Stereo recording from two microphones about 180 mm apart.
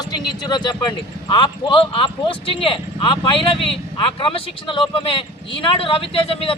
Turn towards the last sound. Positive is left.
turn(degrees=30)  # may be behind; listen again after turning